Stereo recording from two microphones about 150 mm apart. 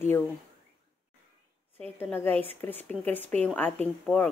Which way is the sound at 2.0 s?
15° left (ahead or behind).